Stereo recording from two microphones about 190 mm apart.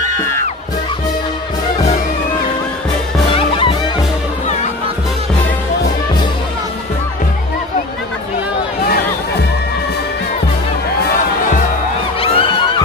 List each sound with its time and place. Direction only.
0.2 s music: 15° left (ahead or behind)
3.3 s music: 25° left (ahead or behind)
12.2 s music: 30° left (ahead or behind)